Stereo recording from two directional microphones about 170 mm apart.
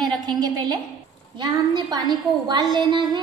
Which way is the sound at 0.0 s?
25° right (ahead or behind).